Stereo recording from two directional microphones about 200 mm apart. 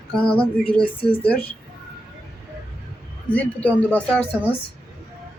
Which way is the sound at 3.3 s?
5° left (ahead or behind).